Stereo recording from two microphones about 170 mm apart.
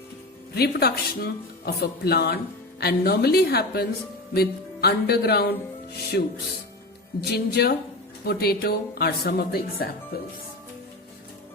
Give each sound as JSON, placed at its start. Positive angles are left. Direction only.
{"t": 0.5, "sound": "speech", "side_deg": 65}